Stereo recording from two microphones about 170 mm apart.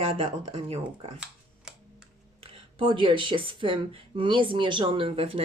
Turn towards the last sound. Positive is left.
turn(degrees=-35)  # may be behind; listen again after turning